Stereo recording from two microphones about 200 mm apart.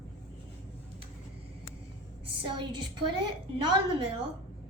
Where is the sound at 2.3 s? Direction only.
25° right (ahead or behind).